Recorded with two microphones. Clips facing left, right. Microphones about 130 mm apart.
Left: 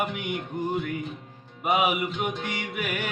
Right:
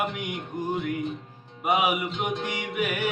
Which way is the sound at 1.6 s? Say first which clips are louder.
Even; 10° right (ahead or behind).